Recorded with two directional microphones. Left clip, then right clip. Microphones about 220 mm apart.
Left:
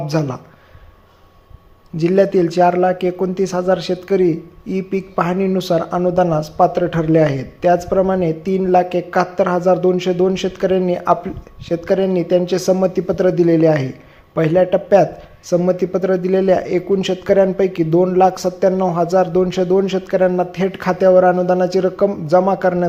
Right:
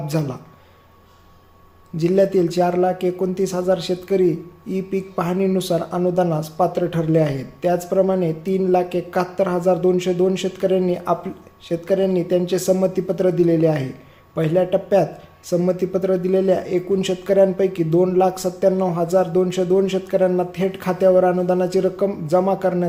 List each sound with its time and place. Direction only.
0.1 s speech: 15° left (ahead or behind)
2.0 s speech: 15° left (ahead or behind)